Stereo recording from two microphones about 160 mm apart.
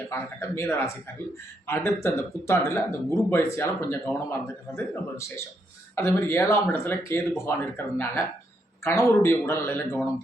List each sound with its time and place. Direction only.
0.1 s speech: 15° left (ahead or behind)